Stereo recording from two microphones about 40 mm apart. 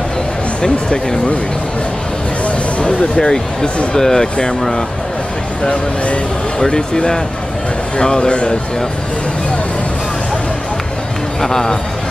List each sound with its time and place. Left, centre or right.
0.6 s speech: left
2.4 s a sound: left
3.2 s speech: left
5.6 s speech: left
6.6 s speech: centre
11.4 s speech: centre